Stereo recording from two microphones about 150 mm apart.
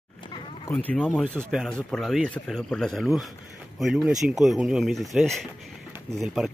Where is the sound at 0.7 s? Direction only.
10° left (ahead or behind).